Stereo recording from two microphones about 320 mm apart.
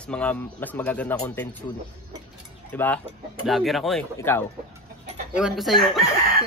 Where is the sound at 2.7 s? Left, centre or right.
Centre.